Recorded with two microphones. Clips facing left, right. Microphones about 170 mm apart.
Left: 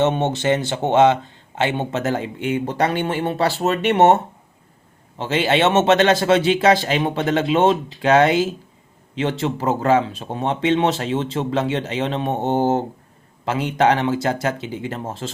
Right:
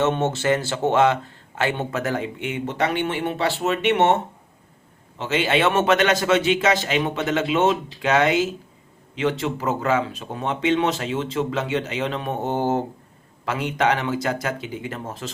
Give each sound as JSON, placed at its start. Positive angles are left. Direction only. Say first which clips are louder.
{"t": 0.0, "sound": "a man's voice", "louder": "left 2 dB", "side_deg": 20}